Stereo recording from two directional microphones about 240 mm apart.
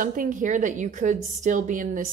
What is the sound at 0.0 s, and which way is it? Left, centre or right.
A woman's voice, right.